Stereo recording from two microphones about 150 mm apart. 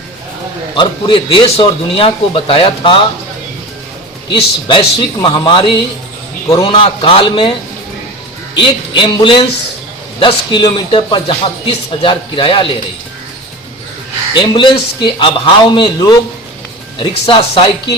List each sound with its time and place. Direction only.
0.8 s speech: 35° left (ahead or behind)
4.3 s speech: 35° left (ahead or behind)
8.6 s speech: 30° left (ahead or behind)
14.3 s speech: 35° left (ahead or behind)